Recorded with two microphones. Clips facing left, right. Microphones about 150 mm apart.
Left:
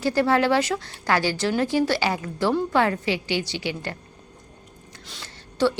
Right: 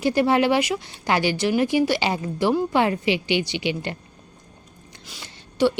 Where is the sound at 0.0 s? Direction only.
20° right (ahead or behind).